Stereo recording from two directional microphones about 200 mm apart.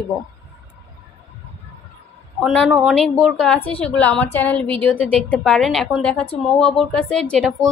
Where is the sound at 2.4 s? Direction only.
Centre (ahead or behind).